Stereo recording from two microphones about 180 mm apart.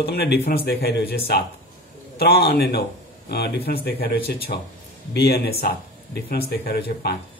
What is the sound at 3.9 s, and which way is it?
Speech, 60° left (ahead or behind).